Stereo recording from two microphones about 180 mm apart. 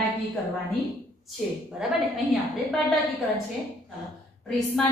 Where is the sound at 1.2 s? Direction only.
Centre (ahead or behind).